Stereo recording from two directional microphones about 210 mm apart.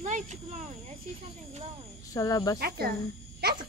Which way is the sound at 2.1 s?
15° left (ahead or behind).